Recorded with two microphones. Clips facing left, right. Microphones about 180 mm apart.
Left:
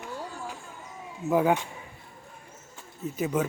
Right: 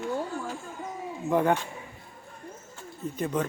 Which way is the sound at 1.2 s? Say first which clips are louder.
Left 1 dB; 5° left (ahead or behind).